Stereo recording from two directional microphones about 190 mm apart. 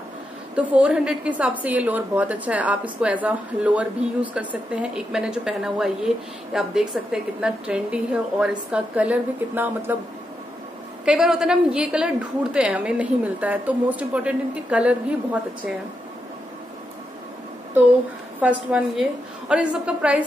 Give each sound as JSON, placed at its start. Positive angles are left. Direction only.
{"t": 0.6, "sound": "a woman's voice", "side_deg": -5}
{"t": 11.1, "sound": "a woman's voice", "side_deg": 0}
{"t": 18.4, "sound": "a woman's voice", "side_deg": -5}